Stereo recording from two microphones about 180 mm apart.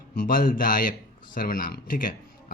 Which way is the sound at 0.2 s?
50° left (ahead or behind).